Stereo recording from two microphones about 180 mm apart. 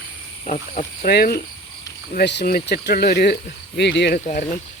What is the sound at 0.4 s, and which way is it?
Speech, 40° left (ahead or behind).